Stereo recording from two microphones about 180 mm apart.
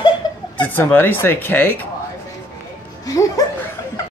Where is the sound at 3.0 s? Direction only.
20° left (ahead or behind).